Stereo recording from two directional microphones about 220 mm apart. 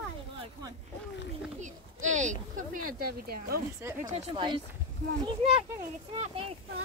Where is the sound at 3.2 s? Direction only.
45° right (ahead or behind).